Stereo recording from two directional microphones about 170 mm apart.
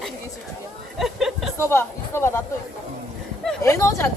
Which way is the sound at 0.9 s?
Centre (ahead or behind).